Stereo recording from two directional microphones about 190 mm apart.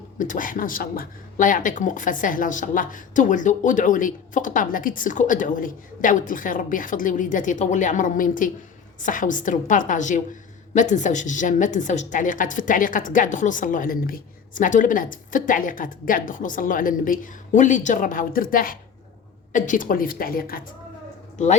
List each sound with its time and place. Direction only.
0.2 s speech: 45° left (ahead or behind)